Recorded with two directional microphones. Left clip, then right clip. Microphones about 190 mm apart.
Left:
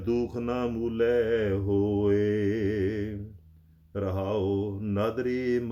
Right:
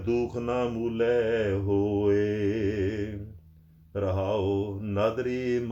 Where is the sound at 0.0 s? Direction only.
25° left (ahead or behind).